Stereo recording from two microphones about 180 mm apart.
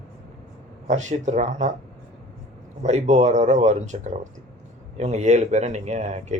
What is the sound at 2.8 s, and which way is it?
Speech, 40° right (ahead or behind).